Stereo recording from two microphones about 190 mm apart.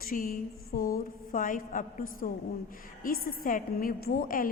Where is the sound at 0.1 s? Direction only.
45° left (ahead or behind).